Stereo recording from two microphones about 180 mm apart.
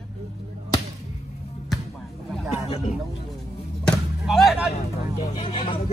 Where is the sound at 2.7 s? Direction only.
35° left (ahead or behind).